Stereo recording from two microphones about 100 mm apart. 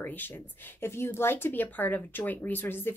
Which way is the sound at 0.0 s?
15° left (ahead or behind).